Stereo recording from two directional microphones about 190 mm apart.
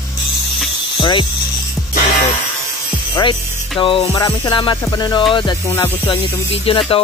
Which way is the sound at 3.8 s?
25° left (ahead or behind).